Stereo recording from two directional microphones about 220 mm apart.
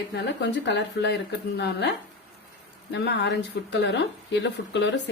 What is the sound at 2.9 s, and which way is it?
Speech, 55° left (ahead or behind).